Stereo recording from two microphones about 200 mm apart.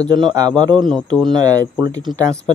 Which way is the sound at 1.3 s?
20° right (ahead or behind).